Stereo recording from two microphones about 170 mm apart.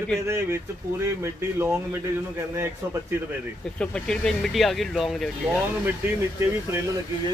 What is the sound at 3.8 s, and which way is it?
Speech, 5° left (ahead or behind).